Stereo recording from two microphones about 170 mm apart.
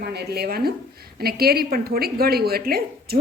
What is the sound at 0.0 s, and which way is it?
A woman's voice, 70° right (ahead or behind).